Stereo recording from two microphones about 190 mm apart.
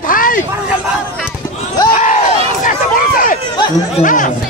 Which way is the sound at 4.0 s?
45° left (ahead or behind).